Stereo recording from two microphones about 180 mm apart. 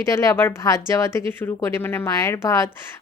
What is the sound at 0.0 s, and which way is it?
Speech, 15° left (ahead or behind).